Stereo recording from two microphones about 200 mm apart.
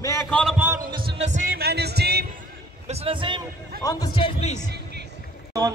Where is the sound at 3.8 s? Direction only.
15° left (ahead or behind); by 4.7 s 35° left (ahead or behind).